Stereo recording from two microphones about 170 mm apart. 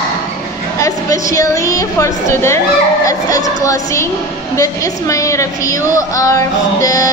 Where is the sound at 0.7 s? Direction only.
20° left (ahead or behind).